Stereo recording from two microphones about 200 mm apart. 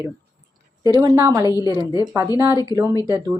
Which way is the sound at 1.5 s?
20° left (ahead or behind).